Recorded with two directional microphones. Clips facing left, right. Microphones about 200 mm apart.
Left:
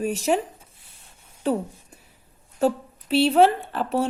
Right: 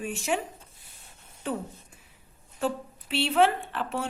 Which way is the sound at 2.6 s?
40° left (ahead or behind).